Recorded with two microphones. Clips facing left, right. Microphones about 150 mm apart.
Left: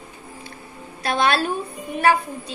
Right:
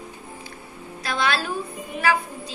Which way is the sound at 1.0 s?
55° left (ahead or behind).